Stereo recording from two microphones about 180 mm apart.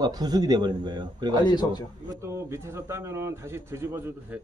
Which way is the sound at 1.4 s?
25° left (ahead or behind).